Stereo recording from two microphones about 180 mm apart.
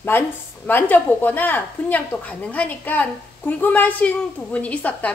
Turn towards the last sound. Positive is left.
turn(degrees=10)  # may be behind; listen again after turning